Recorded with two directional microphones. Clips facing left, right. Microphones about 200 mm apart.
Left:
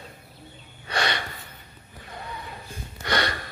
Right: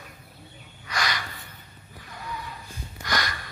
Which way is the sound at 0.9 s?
30° left (ahead or behind).